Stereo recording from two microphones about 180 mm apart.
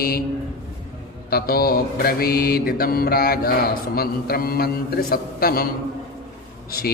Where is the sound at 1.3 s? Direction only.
55° left (ahead or behind).